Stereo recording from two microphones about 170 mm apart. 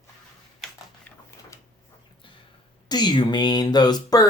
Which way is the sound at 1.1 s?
10° left (ahead or behind).